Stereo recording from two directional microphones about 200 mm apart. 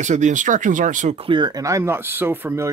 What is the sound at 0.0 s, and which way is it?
Speech, 35° right (ahead or behind).